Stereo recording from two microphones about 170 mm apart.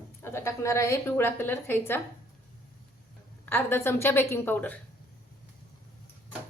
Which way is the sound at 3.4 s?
10° left (ahead or behind).